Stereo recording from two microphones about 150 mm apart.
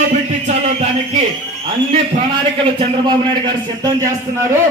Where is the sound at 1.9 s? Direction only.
35° right (ahead or behind).